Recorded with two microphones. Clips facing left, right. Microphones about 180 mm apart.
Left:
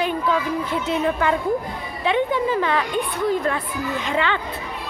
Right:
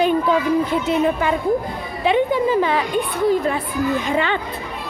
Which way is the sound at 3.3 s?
10° right (ahead or behind).